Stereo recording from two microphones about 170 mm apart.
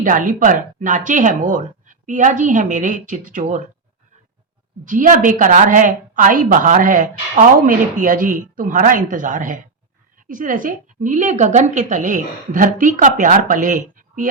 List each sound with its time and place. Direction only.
0.0 s a woman's voice: 50° right (ahead or behind)
4.9 s a woman's voice: 50° right (ahead or behind)